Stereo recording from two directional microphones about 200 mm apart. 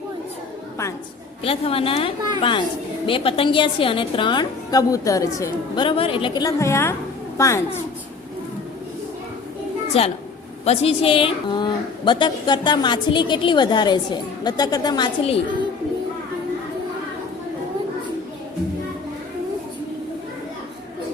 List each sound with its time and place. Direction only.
1.5 s a woman's voice: 30° left (ahead or behind)
9.9 s a woman's voice: 30° left (ahead or behind)